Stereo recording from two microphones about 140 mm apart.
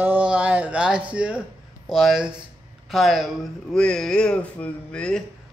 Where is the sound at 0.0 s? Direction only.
10° right (ahead or behind).